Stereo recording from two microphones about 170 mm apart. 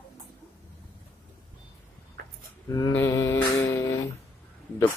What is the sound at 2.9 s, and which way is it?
Mantra, 15° left (ahead or behind).